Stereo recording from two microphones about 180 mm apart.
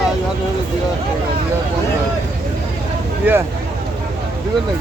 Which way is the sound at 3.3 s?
10° right (ahead or behind).